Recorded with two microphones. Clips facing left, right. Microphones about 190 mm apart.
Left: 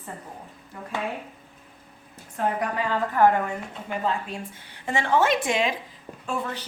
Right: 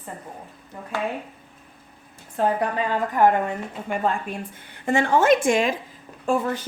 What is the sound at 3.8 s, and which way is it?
A woman's voice, 50° right (ahead or behind).